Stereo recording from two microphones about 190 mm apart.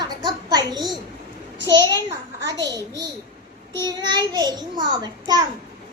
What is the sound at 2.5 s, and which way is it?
Speech, 65° right (ahead or behind).